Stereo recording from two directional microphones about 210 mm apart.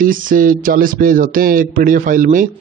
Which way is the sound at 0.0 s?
40° right (ahead or behind).